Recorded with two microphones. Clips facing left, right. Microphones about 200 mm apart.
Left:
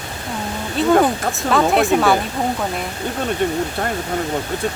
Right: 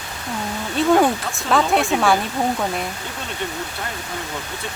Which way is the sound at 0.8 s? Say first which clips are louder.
Left 1 dB; centre (ahead or behind).